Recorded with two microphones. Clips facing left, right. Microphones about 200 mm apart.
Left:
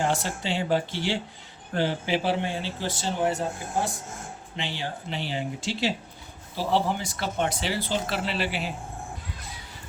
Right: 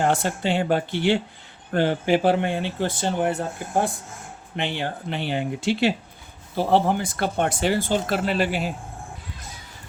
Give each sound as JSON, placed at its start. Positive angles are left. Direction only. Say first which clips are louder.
{"t": 0.0, "sound": "speech", "louder": "right 5 dB", "side_deg": -55}